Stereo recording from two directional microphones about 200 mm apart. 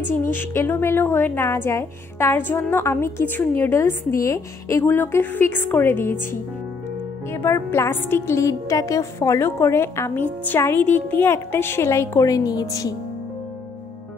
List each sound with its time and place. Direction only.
0.2 s a woman's voice: 10° left (ahead or behind)
7.3 s a woman's voice: 10° left (ahead or behind)